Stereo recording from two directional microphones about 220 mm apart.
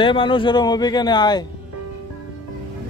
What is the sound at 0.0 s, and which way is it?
Speech, 20° left (ahead or behind).